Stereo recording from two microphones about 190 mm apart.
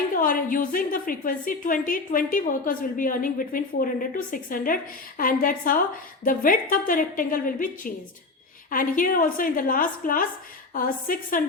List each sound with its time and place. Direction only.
0.2 s a woman's voice: 45° left (ahead or behind)